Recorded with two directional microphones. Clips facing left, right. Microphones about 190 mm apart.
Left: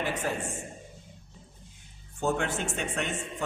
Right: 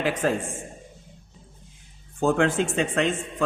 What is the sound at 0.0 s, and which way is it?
Speech, 90° right.